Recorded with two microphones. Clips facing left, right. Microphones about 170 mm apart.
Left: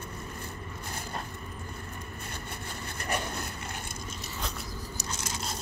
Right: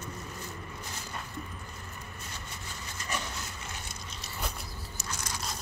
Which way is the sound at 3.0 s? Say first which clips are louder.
Left 4 dB; 55° left (ahead or behind).